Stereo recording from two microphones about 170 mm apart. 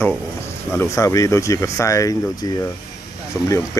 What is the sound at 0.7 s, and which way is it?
Speech, 15° left (ahead or behind).